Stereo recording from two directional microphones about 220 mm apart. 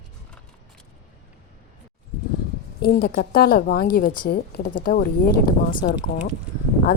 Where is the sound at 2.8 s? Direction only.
45° left (ahead or behind).